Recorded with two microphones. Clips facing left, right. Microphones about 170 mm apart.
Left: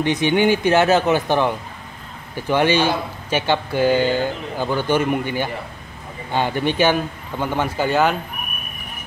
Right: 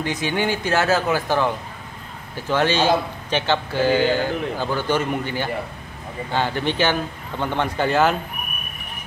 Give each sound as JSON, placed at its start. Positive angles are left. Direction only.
{"t": 0.0, "sound": "speech", "side_deg": 20}